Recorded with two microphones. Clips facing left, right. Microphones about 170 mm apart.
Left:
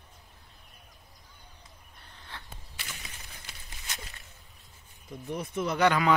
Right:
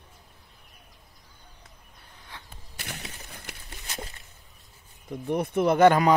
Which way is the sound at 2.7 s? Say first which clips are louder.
Right 7 dB; 60° right (ahead or behind).